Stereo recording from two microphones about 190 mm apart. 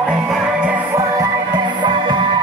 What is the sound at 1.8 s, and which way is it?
Music, 25° right (ahead or behind).